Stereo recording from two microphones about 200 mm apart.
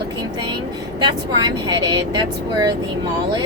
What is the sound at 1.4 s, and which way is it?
Speech, 20° right (ahead or behind).